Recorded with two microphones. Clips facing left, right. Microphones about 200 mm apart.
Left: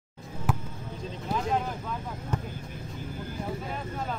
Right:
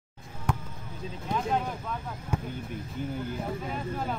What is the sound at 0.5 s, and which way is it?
Basketball bounce, 5° left (ahead or behind).